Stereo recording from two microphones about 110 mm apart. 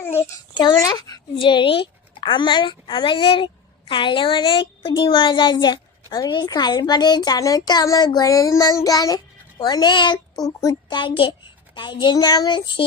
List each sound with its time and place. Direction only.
0.0 s babbling: 20° left (ahead or behind)
0.5 s speech: 40° left (ahead or behind)
1.4 s a woman's voice: 50° left (ahead or behind); by 10.8 s 35° left (ahead or behind)
10.8 s a woman's voice: 45° left (ahead or behind)